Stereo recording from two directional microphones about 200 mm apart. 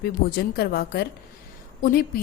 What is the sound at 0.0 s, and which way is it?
A woman's voice, 50° left (ahead or behind).